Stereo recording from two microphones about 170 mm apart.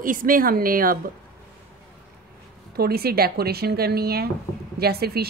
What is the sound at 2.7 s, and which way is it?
A woman's voice, 65° right (ahead or behind).